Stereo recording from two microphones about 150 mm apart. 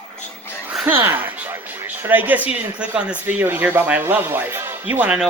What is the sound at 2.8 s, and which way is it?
Speech, 10° right (ahead or behind).